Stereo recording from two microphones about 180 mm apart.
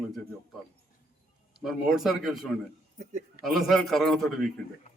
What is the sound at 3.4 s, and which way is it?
Speech, centre (ahead or behind).